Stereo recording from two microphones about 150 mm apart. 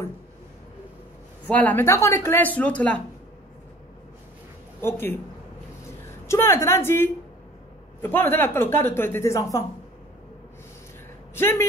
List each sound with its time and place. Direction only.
1.5 s speech: 10° left (ahead or behind)
4.8 s a woman's voice: 15° left (ahead or behind)
11.3 s speech: 15° left (ahead or behind)